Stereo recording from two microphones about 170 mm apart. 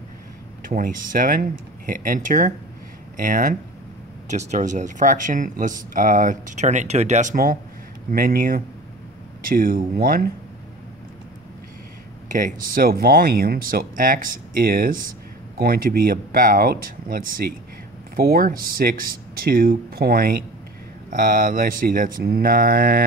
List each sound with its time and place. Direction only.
0.7 s speech: 55° right (ahead or behind)
12.3 s speech: 50° right (ahead or behind)